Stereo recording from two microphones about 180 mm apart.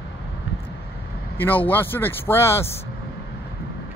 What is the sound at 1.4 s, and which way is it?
Speech, 10° left (ahead or behind).